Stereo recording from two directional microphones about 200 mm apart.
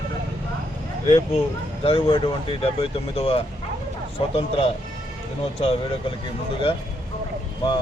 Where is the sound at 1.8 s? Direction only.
25° left (ahead or behind).